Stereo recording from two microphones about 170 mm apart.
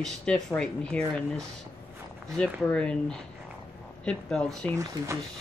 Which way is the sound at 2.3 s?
5° left (ahead or behind).